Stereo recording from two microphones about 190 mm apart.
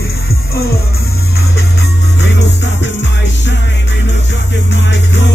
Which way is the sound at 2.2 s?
65° left (ahead or behind).